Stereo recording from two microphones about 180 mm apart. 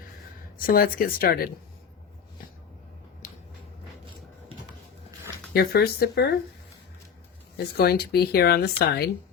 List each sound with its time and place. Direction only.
0.6 s speech: 50° left (ahead or behind)
3.2 s a sound: 45° left (ahead or behind)
5.5 s speech: 60° left (ahead or behind)
7.5 s speech: 60° left (ahead or behind)